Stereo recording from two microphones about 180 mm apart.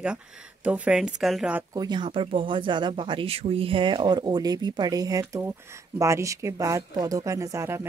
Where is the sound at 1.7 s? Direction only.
25° right (ahead or behind).